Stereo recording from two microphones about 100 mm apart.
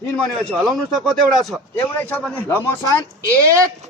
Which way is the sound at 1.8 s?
20° left (ahead or behind).